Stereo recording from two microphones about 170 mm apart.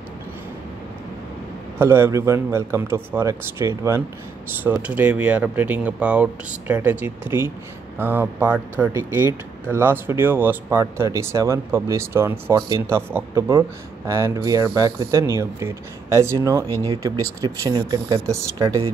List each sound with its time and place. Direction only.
1.8 s speech: 15° right (ahead or behind)